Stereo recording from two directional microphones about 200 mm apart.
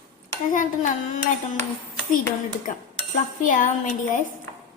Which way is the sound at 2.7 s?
40° left (ahead or behind).